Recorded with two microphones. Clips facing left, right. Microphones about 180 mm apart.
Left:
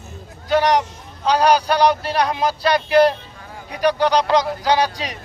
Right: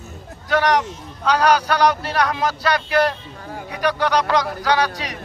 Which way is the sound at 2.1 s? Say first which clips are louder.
Left 1 dB; 25° left (ahead or behind).